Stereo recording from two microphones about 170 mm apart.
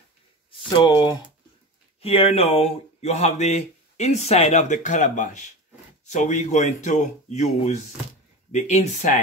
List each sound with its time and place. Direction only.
0.5 s speech: 30° left (ahead or behind)
2.0 s speech: 35° left (ahead or behind)